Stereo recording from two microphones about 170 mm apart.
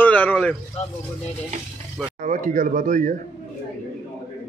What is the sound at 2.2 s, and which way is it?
Speech, 50° right (ahead or behind).